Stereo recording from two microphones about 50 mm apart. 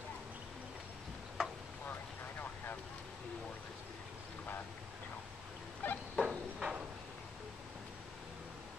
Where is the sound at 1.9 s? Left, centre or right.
Left.